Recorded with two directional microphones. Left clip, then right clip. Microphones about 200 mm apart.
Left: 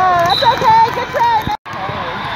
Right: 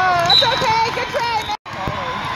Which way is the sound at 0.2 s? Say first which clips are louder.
Left 3 dB; 50° right (ahead or behind).